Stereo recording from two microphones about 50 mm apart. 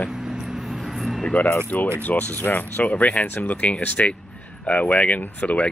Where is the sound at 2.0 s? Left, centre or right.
Left.